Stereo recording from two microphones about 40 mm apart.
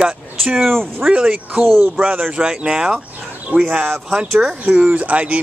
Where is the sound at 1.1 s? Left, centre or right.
Right.